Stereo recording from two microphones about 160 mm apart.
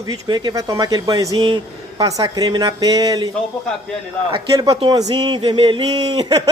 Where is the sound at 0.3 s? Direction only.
25° right (ahead or behind).